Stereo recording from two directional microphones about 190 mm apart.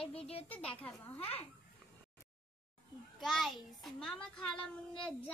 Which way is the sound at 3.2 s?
Centre (ahead or behind).